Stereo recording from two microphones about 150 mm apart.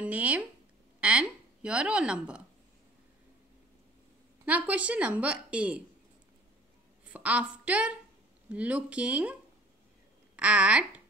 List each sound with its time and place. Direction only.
0.0 s a woman's voice: 10° right (ahead or behind)
4.5 s a woman's voice: 10° right (ahead or behind)
7.1 s a woman's voice: 10° right (ahead or behind)